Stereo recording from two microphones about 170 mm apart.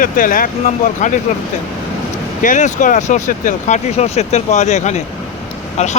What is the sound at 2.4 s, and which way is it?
Speech, 45° left (ahead or behind).